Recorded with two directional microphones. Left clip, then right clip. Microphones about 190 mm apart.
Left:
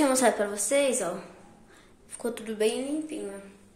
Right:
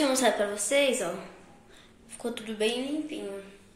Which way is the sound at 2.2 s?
10° left (ahead or behind).